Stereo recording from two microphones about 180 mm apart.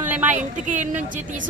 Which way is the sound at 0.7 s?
45° right (ahead or behind).